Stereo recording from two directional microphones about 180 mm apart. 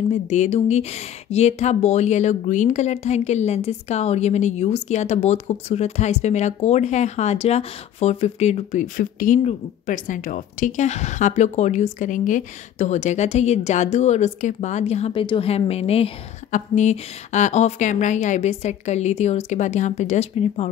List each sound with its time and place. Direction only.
0.1 s a woman's voice: 40° left (ahead or behind)